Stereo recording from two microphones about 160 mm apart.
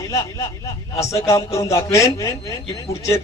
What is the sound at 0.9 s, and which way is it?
Speech, 20° left (ahead or behind).